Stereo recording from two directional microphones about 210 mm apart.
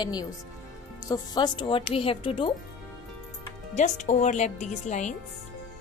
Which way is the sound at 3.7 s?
35° left (ahead or behind).